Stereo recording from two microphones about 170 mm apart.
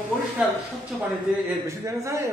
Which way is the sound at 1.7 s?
15° right (ahead or behind).